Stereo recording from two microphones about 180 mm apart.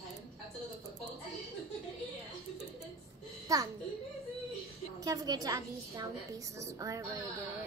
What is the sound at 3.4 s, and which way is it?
Speech, 20° right (ahead or behind).